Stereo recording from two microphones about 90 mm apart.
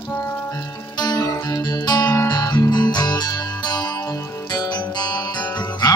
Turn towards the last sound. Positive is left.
turn(degrees=50)  # may be behind; listen again after turning